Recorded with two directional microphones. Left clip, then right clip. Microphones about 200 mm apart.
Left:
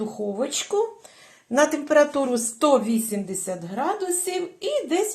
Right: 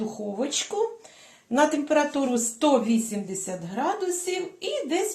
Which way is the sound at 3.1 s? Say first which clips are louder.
Left 3 dB; 35° left (ahead or behind).